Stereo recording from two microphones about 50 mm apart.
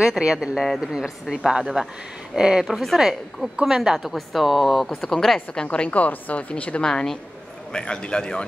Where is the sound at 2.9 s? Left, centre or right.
Centre.